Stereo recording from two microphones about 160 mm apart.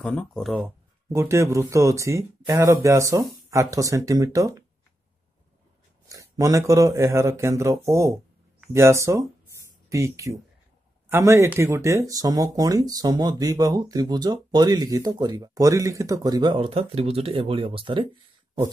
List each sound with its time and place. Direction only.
0.0 s speech: 5° left (ahead or behind)
0.6 s speech: 15° right (ahead or behind)
6.0 s speech: 20° right (ahead or behind)